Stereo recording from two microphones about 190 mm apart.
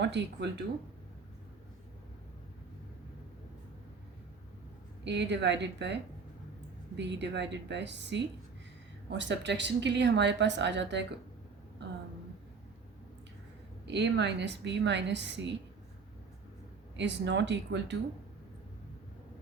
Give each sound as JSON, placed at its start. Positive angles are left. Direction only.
{"t": 0.0, "sound": "a woman's voice", "side_deg": -65}
{"t": 5.0, "sound": "a woman's voice", "side_deg": -65}
{"t": 13.8, "sound": "speech", "side_deg": -65}
{"t": 17.0, "sound": "speech", "side_deg": -65}